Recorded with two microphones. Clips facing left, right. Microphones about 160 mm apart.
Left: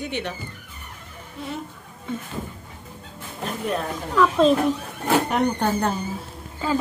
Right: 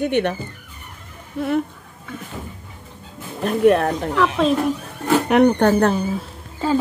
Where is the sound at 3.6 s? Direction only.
70° right (ahead or behind).